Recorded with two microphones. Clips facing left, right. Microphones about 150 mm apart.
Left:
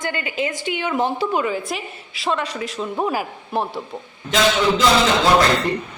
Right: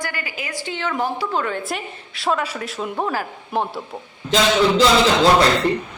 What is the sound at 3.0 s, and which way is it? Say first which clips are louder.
Speech: left 2 dB; 15° left (ahead or behind).